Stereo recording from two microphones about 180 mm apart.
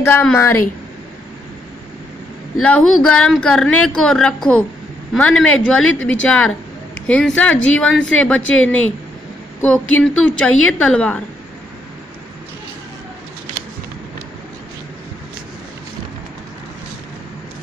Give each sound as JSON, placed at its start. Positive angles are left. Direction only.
{"t": 0.0, "sound": "speech", "side_deg": 10}
{"t": 2.6, "sound": "speech", "side_deg": 5}
{"t": 9.6, "sound": "speech", "side_deg": 10}